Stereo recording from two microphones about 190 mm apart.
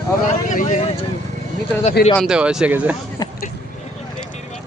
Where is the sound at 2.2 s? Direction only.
5° right (ahead or behind).